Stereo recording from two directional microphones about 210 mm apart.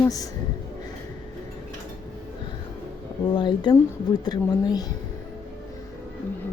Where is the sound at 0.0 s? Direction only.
15° left (ahead or behind).